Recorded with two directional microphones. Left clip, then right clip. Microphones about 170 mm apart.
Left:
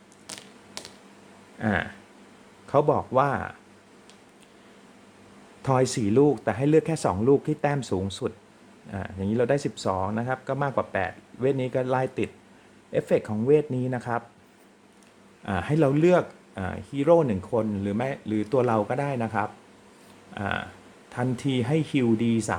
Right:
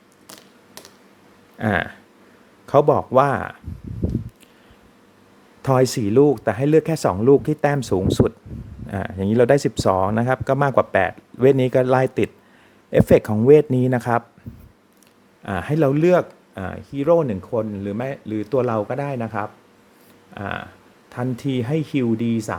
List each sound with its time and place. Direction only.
0.3 s a sound: 5° right (ahead or behind)
1.5 s speech: 35° right (ahead or behind)
5.6 s speech: 30° right (ahead or behind)
15.4 s speech: 25° right (ahead or behind)